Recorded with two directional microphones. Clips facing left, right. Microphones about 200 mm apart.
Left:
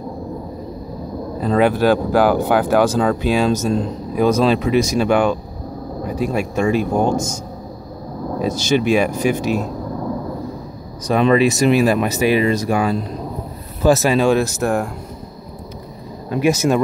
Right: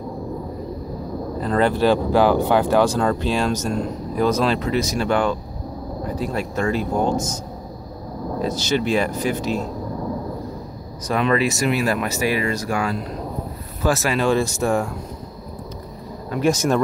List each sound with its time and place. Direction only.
1.4 s speech: 10° left (ahead or behind)
8.4 s speech: 15° left (ahead or behind)
11.1 s speech: 20° left (ahead or behind)
13.8 s speech: 20° left (ahead or behind); by 14.9 s 5° left (ahead or behind)
16.3 s speech: 5° left (ahead or behind)